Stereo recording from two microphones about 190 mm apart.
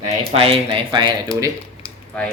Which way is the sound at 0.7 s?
25° right (ahead or behind).